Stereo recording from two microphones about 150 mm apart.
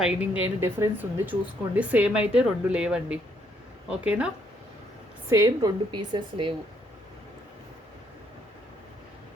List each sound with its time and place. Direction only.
0.0 s speech: 5° right (ahead or behind)
5.3 s a woman's voice: 20° right (ahead or behind)
5.9 s a woman's voice: 30° right (ahead or behind)